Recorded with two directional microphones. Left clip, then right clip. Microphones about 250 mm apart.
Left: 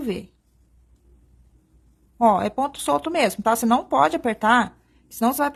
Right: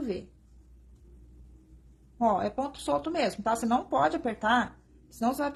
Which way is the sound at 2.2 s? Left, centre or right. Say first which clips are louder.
Left 8 dB; left.